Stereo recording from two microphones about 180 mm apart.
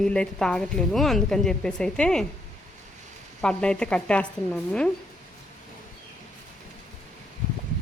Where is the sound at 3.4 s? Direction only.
5° left (ahead or behind).